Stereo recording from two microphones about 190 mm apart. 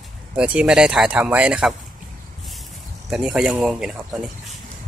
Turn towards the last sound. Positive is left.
turn(degrees=-5)  # may be behind; listen again after turning